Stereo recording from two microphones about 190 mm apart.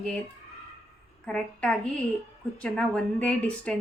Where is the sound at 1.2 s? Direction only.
5° left (ahead or behind).